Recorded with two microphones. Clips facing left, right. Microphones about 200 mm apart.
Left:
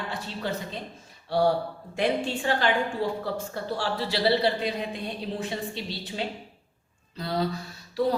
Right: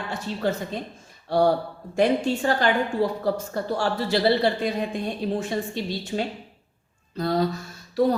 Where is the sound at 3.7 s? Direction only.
45° right (ahead or behind).